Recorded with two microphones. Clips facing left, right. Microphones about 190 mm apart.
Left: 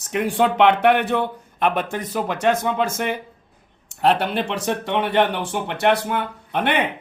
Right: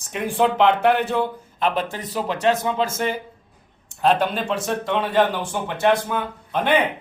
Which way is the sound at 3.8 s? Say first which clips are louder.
Even; 70° left (ahead or behind).